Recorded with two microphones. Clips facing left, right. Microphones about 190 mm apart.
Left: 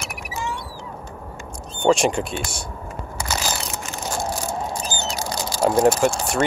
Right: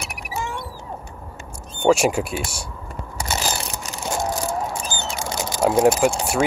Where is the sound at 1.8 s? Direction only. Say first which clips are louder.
Right 1 dB; 5° right (ahead or behind).